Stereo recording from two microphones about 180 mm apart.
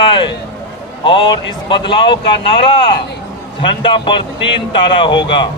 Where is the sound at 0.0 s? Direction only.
25° left (ahead or behind).